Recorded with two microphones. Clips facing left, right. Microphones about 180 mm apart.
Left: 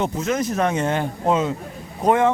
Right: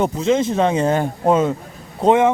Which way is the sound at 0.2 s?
25° right (ahead or behind).